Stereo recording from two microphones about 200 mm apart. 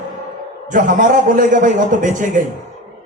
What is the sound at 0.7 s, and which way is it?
A man's voice, 40° right (ahead or behind).